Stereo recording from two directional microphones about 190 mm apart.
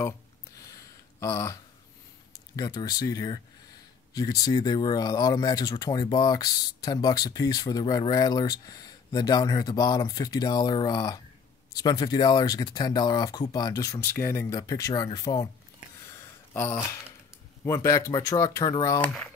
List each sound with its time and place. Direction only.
0.7 s a sound: 15° left (ahead or behind)
2.5 s speech: 20° left (ahead or behind)
17.6 s speech: 15° left (ahead or behind)